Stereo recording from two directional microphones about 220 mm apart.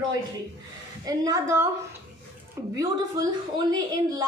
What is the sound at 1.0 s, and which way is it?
Speech, 15° right (ahead or behind).